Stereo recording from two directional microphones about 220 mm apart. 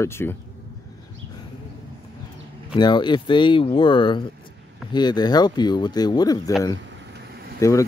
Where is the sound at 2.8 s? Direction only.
20° left (ahead or behind).